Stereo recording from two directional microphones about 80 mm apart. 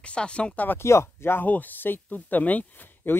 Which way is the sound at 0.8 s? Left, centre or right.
Left.